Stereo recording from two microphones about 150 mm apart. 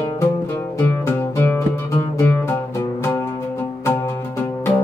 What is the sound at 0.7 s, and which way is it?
Music, 15° left (ahead or behind).